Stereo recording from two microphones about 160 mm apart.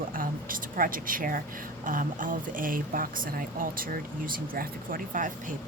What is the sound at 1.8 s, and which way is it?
Speech, 55° right (ahead or behind).